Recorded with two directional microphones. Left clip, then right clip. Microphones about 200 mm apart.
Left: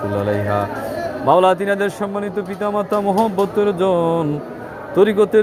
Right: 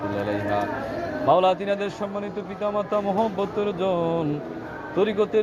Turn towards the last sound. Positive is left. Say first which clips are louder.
# left 8 dB
turn(degrees=55)  # may be behind; listen again after turning